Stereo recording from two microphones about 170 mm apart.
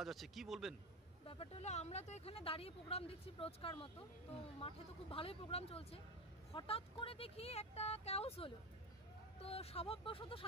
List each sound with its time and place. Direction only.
0.0 s a man's voice: centre (ahead or behind)
1.2 s speech: 35° left (ahead or behind)